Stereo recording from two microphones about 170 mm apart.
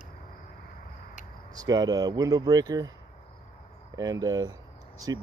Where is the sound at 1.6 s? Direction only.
25° right (ahead or behind).